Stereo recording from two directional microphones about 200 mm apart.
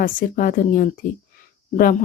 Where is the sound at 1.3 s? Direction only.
45° left (ahead or behind).